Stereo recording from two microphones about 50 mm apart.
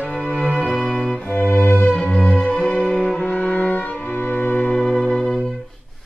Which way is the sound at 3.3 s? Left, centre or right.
Left.